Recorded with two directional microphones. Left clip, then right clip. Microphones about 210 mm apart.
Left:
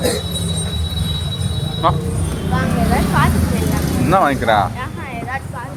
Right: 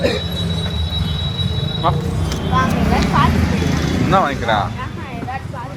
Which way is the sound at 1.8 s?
60° left (ahead or behind).